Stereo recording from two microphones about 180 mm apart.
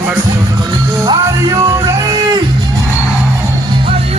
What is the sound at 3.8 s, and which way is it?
Music, 30° right (ahead or behind).